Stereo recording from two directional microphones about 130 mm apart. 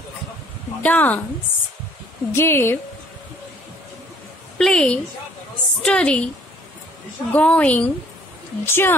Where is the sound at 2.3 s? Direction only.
20° left (ahead or behind).